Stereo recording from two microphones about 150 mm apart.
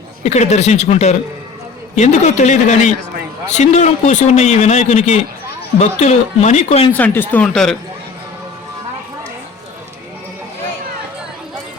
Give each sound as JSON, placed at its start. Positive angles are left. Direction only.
{"t": 0.2, "sound": "a man's voice", "side_deg": 50}
{"t": 6.9, "sound": "speech", "side_deg": 15}